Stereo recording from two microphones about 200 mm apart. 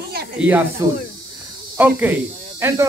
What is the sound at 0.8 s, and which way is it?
Speech, 15° right (ahead or behind).